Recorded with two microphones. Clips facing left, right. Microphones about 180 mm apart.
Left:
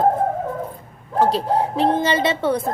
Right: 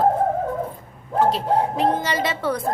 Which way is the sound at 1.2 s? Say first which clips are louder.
Left 1 dB; 35° left (ahead or behind).